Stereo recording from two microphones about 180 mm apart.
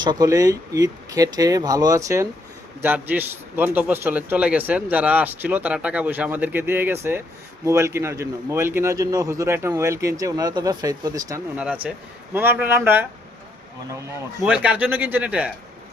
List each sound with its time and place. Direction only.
0.0 s a man's voice: 20° right (ahead or behind)
11.5 s a man's voice: 10° right (ahead or behind)
14.4 s a man's voice: 5° right (ahead or behind)